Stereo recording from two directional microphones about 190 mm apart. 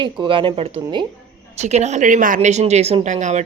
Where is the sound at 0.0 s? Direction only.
25° right (ahead or behind).